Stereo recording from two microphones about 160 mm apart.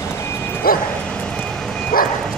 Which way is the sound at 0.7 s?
65° left (ahead or behind).